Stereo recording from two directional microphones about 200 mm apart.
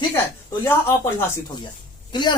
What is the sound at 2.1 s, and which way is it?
Speech, 20° left (ahead or behind).